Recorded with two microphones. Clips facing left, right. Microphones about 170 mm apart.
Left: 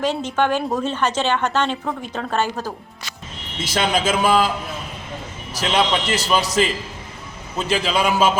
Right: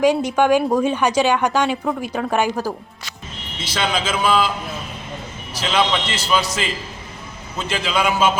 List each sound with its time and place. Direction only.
0.0 s a woman's voice: 10° right (ahead or behind)
3.6 s speech: 45° left (ahead or behind)
5.5 s a man's voice: 40° left (ahead or behind)
7.7 s a man's voice: 35° left (ahead or behind)